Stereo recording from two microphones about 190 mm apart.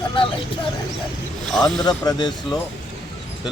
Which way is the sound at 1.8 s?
20° left (ahead or behind).